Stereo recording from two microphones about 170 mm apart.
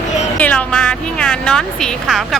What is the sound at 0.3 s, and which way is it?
A woman's voice, 5° left (ahead or behind).